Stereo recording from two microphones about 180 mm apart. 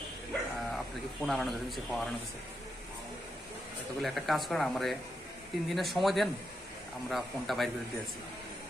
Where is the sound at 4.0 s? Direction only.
Centre (ahead or behind).